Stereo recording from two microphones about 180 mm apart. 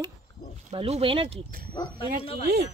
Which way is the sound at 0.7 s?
35° right (ahead or behind).